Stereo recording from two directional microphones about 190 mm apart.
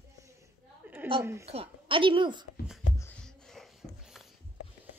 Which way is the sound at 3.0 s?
5° left (ahead or behind).